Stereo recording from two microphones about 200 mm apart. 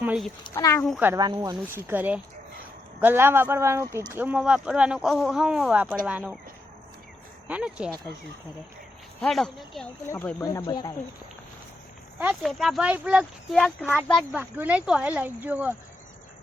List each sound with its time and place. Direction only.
0.0 s a sound: 5° right (ahead or behind)
0.4 s speech: 15° left (ahead or behind)
0.9 s speech: 5° right (ahead or behind)
1.1 s speech: 20° right (ahead or behind)
7.4 s speech: 5° right (ahead or behind)
9.2 s speech: centre (ahead or behind); by 10.9 s 20° left (ahead or behind)
12.2 s speech: 5° right (ahead or behind)
14.3 s speech: 10° right (ahead or behind)